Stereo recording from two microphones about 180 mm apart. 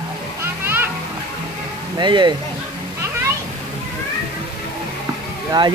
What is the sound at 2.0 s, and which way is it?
Speech, 25° right (ahead or behind).